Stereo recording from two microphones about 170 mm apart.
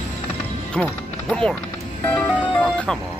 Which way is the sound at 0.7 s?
5° left (ahead or behind).